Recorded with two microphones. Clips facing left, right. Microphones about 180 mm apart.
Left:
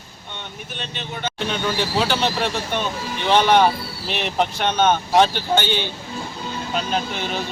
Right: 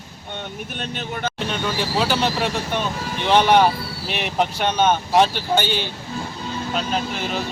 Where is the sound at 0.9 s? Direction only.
50° right (ahead or behind).